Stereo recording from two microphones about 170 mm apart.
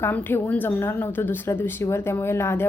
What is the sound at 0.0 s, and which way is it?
A woman's voice, 10° left (ahead or behind).